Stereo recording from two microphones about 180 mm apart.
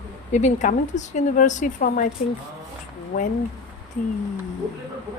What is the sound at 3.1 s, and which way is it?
Speech, 45° left (ahead or behind).